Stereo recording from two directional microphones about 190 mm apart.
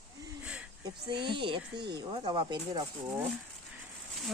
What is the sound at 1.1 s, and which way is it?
Speech, 25° right (ahead or behind).